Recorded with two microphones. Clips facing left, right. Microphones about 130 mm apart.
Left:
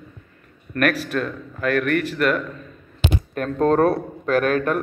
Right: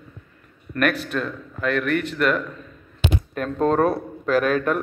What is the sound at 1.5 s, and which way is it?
Speech, 55° left (ahead or behind).